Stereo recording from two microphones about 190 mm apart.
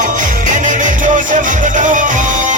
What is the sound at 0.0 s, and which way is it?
Music, 40° right (ahead or behind).